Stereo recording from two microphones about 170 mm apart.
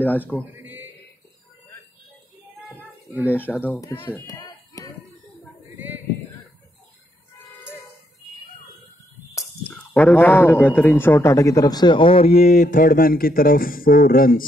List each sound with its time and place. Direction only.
0.0 s a man's voice: 10° left (ahead or behind)
0.6 s a sound: 10° right (ahead or behind)
3.1 s speech: 10° right (ahead or behind)
3.3 s a man's voice: 10° left (ahead or behind)
4.5 s a sound: 20° left (ahead or behind)
5.8 s male singing: 10° right (ahead or behind)
9.3 s a sound: 20° left (ahead or behind)
9.8 s a man's voice: 10° left (ahead or behind); by 12.3 s 30° left (ahead or behind)
12.3 s speech: 65° left (ahead or behind)
12.5 s speech: 50° left (ahead or behind)